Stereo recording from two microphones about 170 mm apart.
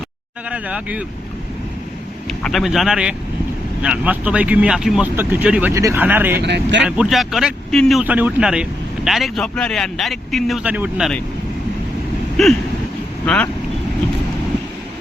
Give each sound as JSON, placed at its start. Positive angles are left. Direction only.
{"t": 0.5, "sound": "speech", "side_deg": -10}
{"t": 2.4, "sound": "speech", "side_deg": 0}
{"t": 6.4, "sound": "speech", "side_deg": -90}
{"t": 6.8, "sound": "speech", "side_deg": -5}
{"t": 8.0, "sound": "speech", "side_deg": -10}
{"t": 12.4, "sound": "speech", "side_deg": 0}